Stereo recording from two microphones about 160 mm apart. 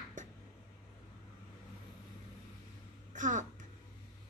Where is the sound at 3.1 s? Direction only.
50° right (ahead or behind).